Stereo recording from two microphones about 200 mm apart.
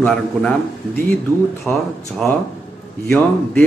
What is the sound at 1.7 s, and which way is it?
Speech, 10° left (ahead or behind).